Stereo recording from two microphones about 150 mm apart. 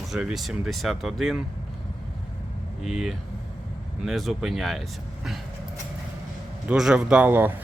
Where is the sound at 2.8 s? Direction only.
Centre (ahead or behind).